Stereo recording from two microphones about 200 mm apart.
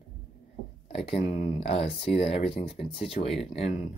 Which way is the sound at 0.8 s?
30° left (ahead or behind).